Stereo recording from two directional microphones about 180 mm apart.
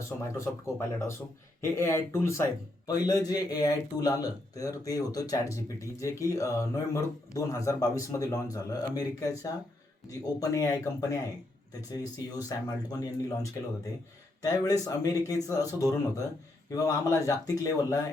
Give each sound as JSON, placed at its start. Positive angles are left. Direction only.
{"t": 0.0, "sound": "a man's voice", "side_deg": 15}